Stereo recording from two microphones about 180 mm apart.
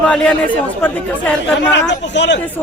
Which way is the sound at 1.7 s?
75° left (ahead or behind).